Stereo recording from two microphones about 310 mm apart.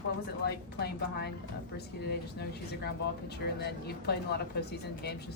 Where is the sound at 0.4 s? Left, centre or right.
Left.